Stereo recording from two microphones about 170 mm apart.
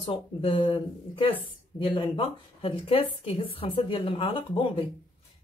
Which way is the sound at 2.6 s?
35° left (ahead or behind).